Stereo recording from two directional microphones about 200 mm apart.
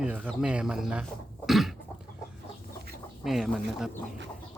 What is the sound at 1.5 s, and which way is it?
Cough, centre (ahead or behind).